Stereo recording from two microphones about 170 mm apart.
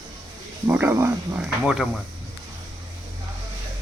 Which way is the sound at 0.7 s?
15° right (ahead or behind).